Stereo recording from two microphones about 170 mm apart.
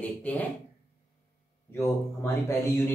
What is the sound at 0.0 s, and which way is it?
Speech, 10° left (ahead or behind).